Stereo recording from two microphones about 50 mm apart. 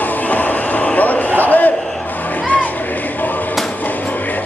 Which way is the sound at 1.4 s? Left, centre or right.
Left.